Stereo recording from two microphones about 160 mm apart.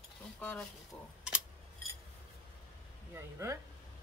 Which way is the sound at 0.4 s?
10° left (ahead or behind).